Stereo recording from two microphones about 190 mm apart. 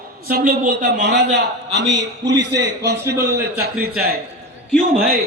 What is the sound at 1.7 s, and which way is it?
A man's voice, 65° right (ahead or behind).